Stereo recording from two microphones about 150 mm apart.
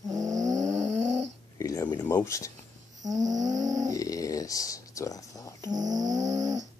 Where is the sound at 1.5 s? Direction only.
20° left (ahead or behind).